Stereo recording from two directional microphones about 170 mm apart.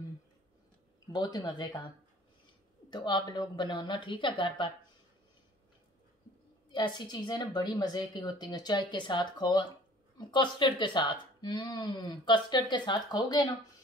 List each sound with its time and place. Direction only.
1.1 s speech: 25° left (ahead or behind)
2.9 s speech: 25° left (ahead or behind)
6.7 s speech: 25° left (ahead or behind)